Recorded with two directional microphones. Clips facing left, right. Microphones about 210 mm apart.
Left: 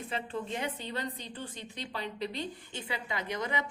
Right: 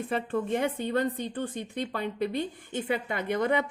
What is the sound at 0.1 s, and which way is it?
A woman's voice, 55° right (ahead or behind).